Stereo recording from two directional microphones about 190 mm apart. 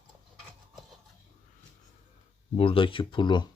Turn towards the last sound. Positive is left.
turn(degrees=25)  # may be behind; listen again after turning